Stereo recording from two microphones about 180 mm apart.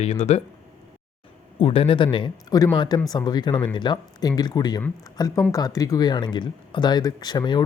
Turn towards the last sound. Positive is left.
turn(degrees=25)  # may be behind; listen again after turning